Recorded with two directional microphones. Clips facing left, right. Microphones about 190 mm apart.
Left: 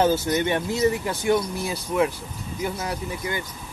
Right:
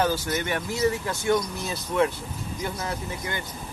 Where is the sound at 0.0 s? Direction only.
20° left (ahead or behind).